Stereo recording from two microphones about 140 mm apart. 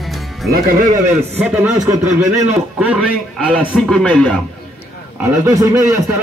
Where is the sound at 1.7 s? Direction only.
20° right (ahead or behind).